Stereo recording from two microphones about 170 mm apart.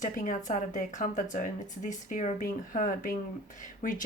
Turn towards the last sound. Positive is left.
turn(degrees=50)  # may be behind; listen again after turning